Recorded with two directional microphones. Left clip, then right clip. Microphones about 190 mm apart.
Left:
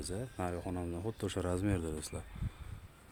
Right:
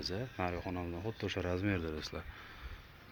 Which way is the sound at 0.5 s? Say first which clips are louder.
Even; 35° left (ahead or behind).